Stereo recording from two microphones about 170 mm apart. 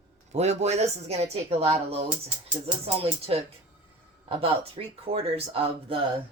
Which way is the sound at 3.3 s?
35° right (ahead or behind).